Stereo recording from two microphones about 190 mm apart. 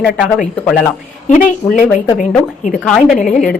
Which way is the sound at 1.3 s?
45° left (ahead or behind).